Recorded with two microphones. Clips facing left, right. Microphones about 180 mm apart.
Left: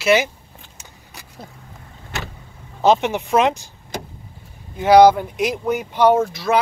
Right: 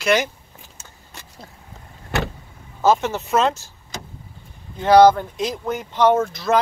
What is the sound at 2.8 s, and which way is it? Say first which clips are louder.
Speech: left 2 dB; 15° left (ahead or behind).